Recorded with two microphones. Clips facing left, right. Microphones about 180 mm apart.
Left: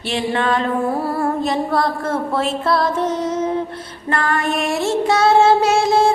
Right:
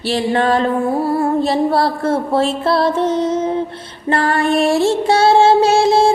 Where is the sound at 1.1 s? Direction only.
30° right (ahead or behind).